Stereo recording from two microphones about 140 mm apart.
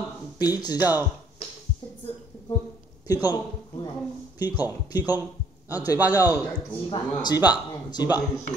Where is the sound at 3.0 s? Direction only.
25° left (ahead or behind).